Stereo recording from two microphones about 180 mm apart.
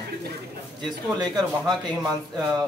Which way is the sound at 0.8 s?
25° right (ahead or behind).